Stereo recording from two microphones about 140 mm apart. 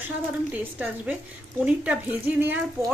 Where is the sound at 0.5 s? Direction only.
10° right (ahead or behind).